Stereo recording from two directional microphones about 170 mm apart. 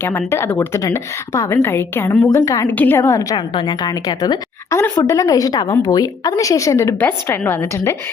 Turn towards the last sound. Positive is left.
turn(degrees=15)  # may be behind; listen again after turning